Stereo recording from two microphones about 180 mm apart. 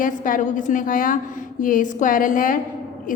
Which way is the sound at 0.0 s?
45° left (ahead or behind).